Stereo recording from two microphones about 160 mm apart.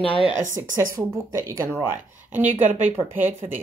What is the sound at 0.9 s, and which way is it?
Speech, 20° right (ahead or behind).